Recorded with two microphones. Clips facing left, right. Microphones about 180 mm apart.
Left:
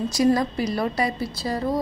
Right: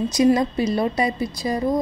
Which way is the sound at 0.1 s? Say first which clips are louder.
Right 3 dB; 20° right (ahead or behind).